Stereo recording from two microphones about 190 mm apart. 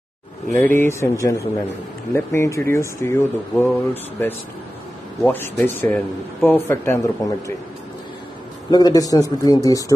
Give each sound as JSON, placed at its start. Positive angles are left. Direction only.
{"t": 0.5, "sound": "speech", "side_deg": 10}
{"t": 8.6, "sound": "a man's voice", "side_deg": 20}